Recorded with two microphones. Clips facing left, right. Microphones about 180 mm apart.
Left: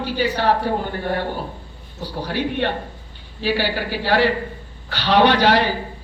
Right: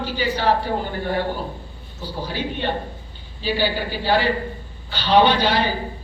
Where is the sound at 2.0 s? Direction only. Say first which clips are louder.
Left 3 dB; 70° left (ahead or behind).